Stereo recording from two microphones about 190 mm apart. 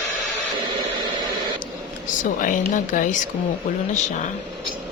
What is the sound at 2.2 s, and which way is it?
Speech, 45° left (ahead or behind).